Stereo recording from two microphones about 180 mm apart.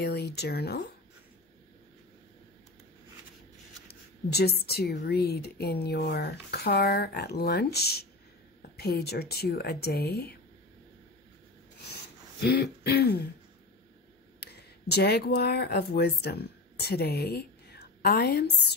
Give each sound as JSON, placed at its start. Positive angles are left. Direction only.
{"t": 0.0, "sound": "speech", "side_deg": 65}
{"t": 3.8, "sound": "a sound", "side_deg": 60}
{"t": 5.0, "sound": "speech", "side_deg": 60}
{"t": 12.4, "sound": "speech", "side_deg": 65}
{"t": 14.4, "sound": "speech", "side_deg": 65}